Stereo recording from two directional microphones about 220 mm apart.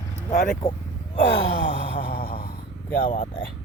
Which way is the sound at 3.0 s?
30° left (ahead or behind).